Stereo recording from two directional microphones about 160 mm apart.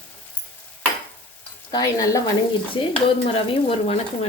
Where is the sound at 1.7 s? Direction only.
20° left (ahead or behind).